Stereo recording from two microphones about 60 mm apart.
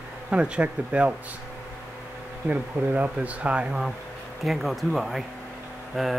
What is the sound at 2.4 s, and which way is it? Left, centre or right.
Speech, right.